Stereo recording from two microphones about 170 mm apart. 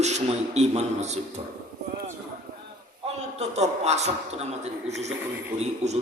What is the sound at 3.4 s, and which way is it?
A man's voice, 40° right (ahead or behind).